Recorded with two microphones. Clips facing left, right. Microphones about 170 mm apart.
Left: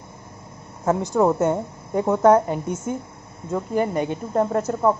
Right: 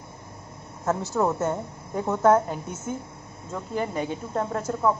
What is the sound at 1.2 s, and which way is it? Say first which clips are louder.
A woman's voice: left 7 dB; 10° left (ahead or behind).